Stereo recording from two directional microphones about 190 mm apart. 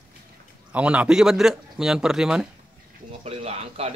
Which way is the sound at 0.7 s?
5° right (ahead or behind).